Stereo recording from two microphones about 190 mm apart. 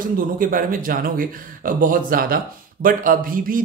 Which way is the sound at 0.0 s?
45° right (ahead or behind).